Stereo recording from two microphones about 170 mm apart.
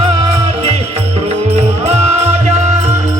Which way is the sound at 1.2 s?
40° right (ahead or behind).